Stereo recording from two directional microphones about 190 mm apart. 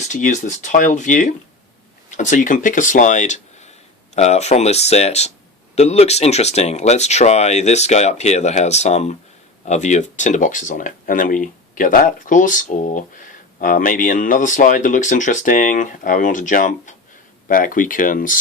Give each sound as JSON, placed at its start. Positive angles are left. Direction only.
{"t": 0.0, "sound": "speech", "side_deg": 40}